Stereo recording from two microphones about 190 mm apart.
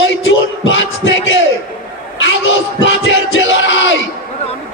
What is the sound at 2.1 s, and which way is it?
Music, 80° left.